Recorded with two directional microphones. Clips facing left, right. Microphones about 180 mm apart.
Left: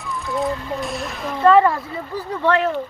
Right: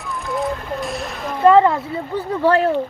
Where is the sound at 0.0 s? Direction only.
Centre (ahead or behind).